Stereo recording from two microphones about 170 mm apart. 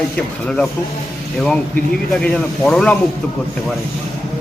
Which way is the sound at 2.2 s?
5° left (ahead or behind).